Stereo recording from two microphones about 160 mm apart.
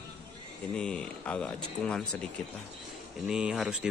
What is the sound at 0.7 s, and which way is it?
Speech, 5° left (ahead or behind).